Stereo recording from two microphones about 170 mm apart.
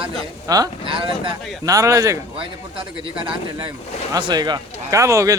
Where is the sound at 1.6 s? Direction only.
20° right (ahead or behind).